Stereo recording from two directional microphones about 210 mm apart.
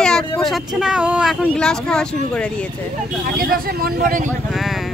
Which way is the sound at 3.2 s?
45° right (ahead or behind).